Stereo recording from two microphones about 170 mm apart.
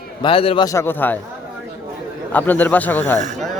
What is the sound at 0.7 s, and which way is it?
Speech, 15° left (ahead or behind).